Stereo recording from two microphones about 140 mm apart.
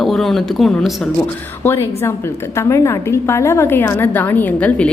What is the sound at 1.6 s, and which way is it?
A woman's voice, 15° left (ahead or behind).